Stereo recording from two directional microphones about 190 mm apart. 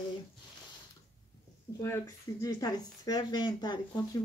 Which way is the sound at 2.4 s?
20° left (ahead or behind).